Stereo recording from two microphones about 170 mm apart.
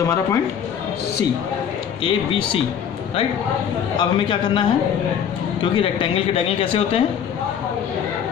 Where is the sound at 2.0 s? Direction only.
30° left (ahead or behind).